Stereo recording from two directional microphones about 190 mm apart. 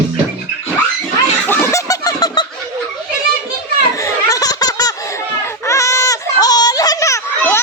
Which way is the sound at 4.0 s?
15° left (ahead or behind).